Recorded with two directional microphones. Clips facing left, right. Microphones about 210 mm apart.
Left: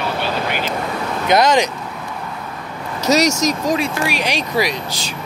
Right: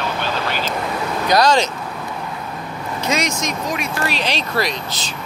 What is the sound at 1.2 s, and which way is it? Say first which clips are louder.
Speech: left 1 dB; 20° left (ahead or behind).